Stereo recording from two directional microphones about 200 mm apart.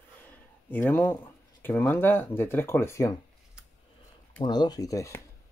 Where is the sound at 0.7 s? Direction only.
10° left (ahead or behind).